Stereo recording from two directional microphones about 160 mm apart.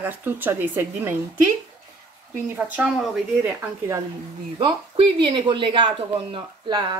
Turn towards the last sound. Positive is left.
turn(degrees=-30)  # may be behind; listen again after turning